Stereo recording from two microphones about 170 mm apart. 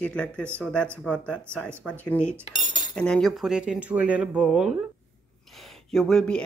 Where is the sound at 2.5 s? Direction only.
25° left (ahead or behind).